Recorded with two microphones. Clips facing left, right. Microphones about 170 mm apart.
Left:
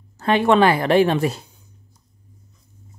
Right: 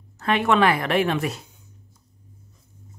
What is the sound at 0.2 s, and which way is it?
A woman's voice, 30° left (ahead or behind).